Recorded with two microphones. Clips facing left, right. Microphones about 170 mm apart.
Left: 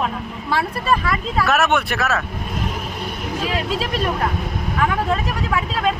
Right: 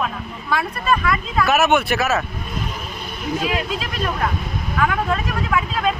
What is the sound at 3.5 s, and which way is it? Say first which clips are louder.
Speech: left 2 dB; 30° left (ahead or behind).